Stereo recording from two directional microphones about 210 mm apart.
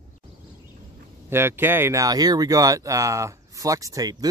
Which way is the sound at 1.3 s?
10° right (ahead or behind).